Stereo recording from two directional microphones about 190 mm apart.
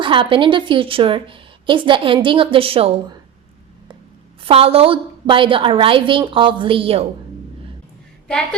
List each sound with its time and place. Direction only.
0.0 s a woman's voice: 25° right (ahead or behind)
4.4 s a woman's voice: 30° right (ahead or behind)